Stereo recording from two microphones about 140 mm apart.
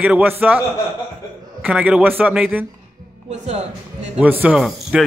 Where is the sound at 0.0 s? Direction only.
10° right (ahead or behind).